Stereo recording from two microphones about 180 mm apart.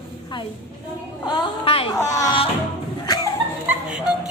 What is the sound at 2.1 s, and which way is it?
Speech, 20° left (ahead or behind).